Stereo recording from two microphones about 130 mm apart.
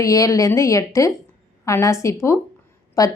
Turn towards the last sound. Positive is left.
turn(degrees=25)  # may be behind; listen again after turning